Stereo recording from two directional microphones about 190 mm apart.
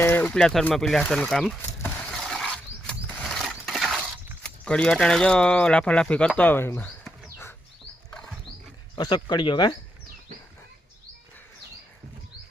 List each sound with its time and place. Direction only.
0.0 s a sound: 10° left (ahead or behind)
4.6 s speech: 5° left (ahead or behind)
8.1 s rodents: 5° left (ahead or behind)
9.0 s speech: 20° left (ahead or behind)